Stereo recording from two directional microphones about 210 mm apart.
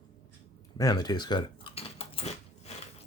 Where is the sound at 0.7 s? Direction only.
20° left (ahead or behind).